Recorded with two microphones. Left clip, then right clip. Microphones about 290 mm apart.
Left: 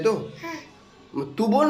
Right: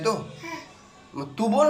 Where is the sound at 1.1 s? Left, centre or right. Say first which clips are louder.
Left 1 dB; centre.